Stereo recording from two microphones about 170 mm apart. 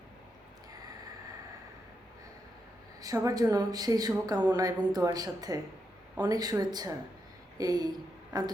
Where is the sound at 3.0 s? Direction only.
20° right (ahead or behind).